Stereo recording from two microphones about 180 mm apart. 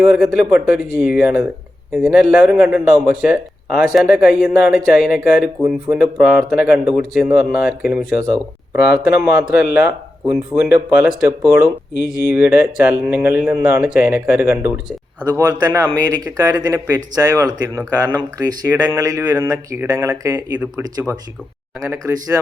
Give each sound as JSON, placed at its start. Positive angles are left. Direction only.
{"t": 0.1, "sound": "speech", "side_deg": -5}
{"t": 15.2, "sound": "speech", "side_deg": -20}